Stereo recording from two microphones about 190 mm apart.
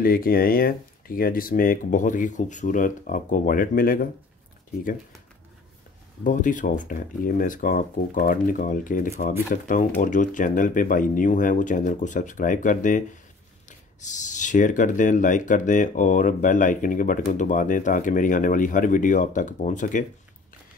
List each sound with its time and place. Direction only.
0.0 s speech: 50° left (ahead or behind)
6.2 s speech: 45° left (ahead or behind)